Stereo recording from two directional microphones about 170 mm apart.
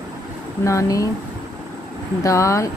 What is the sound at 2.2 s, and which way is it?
Speech, 20° left (ahead or behind).